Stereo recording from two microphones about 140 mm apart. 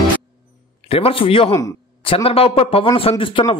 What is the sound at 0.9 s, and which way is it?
A man's voice, 45° left (ahead or behind).